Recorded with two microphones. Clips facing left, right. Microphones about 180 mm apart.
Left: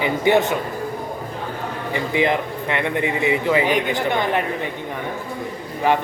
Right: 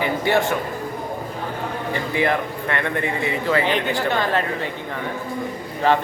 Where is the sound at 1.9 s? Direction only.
20° left (ahead or behind).